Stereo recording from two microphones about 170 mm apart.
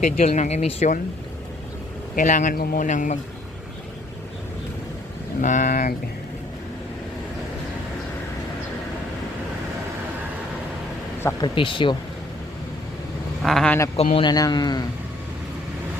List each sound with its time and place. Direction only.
0.0 s speech: 45° left (ahead or behind)
2.1 s speech: 45° left (ahead or behind)
5.4 s speech: 50° left (ahead or behind)
11.2 s speech: 15° left (ahead or behind)
11.4 s speech: 30° left (ahead or behind)
13.4 s speech: 5° left (ahead or behind)
13.9 s speech: 35° left (ahead or behind)
14.3 s speech: 25° left (ahead or behind)